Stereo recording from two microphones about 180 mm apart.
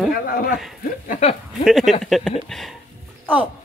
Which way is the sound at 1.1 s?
40° left (ahead or behind).